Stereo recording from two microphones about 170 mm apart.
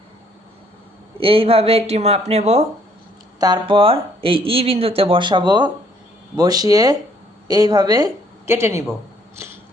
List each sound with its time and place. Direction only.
1.2 s speech: 30° right (ahead or behind)
3.4 s speech: 25° right (ahead or behind)